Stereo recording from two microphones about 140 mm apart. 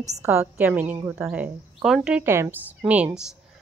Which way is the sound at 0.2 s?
15° right (ahead or behind).